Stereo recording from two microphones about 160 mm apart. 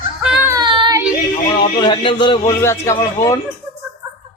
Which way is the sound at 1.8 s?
30° left (ahead or behind).